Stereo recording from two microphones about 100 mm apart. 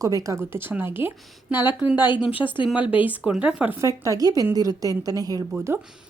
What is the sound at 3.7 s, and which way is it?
A woman's voice, 30° right (ahead or behind).